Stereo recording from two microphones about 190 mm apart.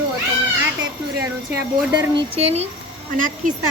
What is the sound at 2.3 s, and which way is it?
Speech, 35° right (ahead or behind).